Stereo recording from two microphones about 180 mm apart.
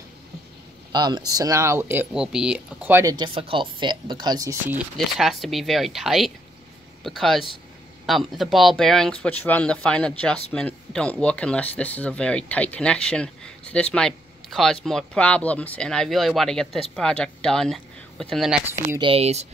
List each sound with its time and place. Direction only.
0.9 s speech: 25° right (ahead or behind)
3.3 s speech: 30° right (ahead or behind); by 4.8 s 15° right (ahead or behind)
4.9 s speech: centre (ahead or behind)
18.9 s speech: 30° right (ahead or behind)